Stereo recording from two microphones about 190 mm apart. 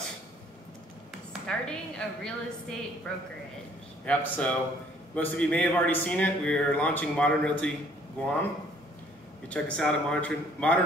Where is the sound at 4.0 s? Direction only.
5° left (ahead or behind).